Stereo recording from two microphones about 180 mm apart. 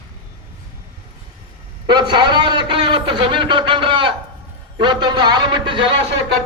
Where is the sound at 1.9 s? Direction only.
25° right (ahead or behind).